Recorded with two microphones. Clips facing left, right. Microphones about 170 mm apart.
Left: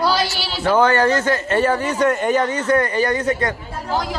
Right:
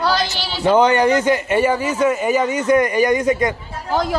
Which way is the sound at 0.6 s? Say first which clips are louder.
Right 2 dB; 15° right (ahead or behind).